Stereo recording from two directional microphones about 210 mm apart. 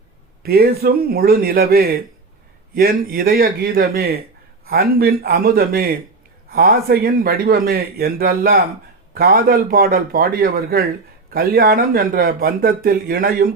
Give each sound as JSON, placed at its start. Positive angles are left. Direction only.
{"t": 0.4, "sound": "speech", "side_deg": -45}